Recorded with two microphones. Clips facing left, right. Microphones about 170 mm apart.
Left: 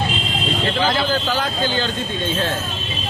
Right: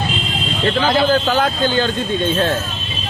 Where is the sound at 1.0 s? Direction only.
55° right (ahead or behind).